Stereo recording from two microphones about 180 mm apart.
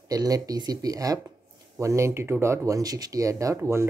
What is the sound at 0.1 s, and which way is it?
Speech, 20° right (ahead or behind).